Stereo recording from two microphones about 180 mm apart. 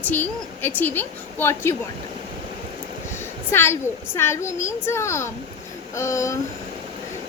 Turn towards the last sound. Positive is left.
turn(degrees=15)  # may be behind; listen again after turning